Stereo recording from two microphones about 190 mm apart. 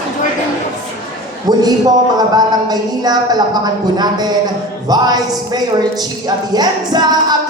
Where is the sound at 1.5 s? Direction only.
20° right (ahead or behind).